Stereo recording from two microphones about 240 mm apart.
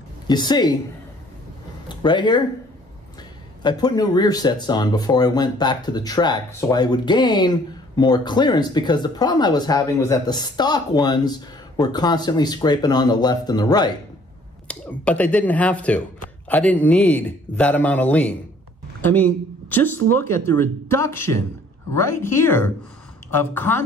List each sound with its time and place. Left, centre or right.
0.3 s speech: centre
2.0 s speech: centre
3.6 s speech: centre
14.7 s speech: centre